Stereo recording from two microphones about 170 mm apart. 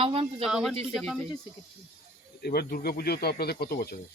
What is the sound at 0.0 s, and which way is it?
Speech, 35° right (ahead or behind).